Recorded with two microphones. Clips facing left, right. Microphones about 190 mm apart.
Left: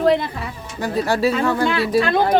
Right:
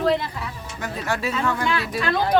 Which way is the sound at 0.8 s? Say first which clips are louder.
Left 8 dB; 35° left (ahead or behind).